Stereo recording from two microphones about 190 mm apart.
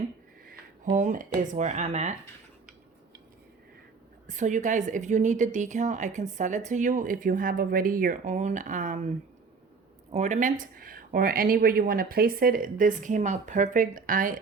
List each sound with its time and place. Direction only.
0.9 s a woman's voice: 40° right (ahead or behind)
4.3 s a woman's voice: 40° right (ahead or behind)